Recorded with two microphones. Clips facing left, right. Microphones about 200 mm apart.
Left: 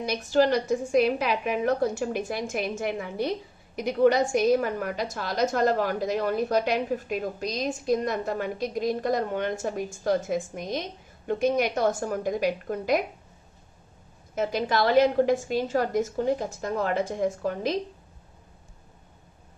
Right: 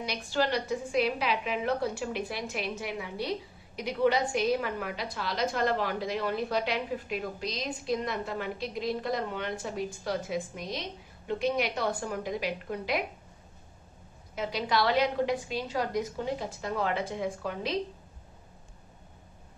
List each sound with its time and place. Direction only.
0.0 s a woman's voice: 45° left (ahead or behind)
14.3 s a woman's voice: 45° left (ahead or behind)